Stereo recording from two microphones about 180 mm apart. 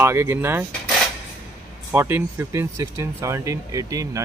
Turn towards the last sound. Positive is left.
turn(degrees=-20)  # may be behind; listen again after turning